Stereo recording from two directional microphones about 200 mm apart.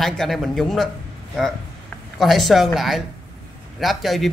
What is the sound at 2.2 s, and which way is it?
A man's voice, centre (ahead or behind).